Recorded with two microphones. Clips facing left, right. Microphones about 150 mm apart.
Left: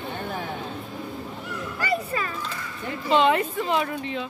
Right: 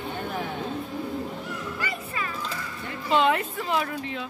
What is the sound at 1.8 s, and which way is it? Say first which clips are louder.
Dog: left 6 dB; 35° left (ahead or behind).